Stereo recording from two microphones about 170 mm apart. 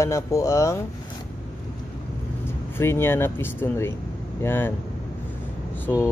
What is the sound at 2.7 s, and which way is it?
Speech, 15° left (ahead or behind).